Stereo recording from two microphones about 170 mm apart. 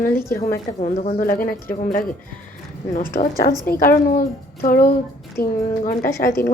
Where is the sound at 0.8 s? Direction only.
45° left (ahead or behind).